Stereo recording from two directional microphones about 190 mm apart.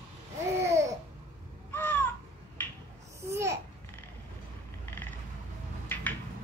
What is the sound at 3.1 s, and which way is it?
Babbling, 15° right (ahead or behind).